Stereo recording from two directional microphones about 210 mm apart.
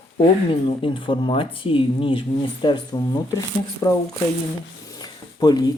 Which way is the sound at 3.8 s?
15° left (ahead or behind).